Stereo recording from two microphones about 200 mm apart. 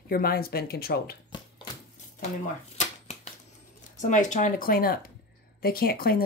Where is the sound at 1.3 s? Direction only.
20° left (ahead or behind).